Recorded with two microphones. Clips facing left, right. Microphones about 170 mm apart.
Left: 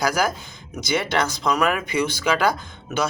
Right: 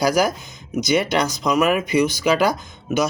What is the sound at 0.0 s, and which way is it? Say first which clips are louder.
Speech: right 4 dB; 20° right (ahead or behind).